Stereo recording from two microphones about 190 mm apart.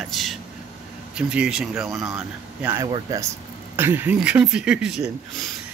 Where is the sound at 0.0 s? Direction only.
Centre (ahead or behind).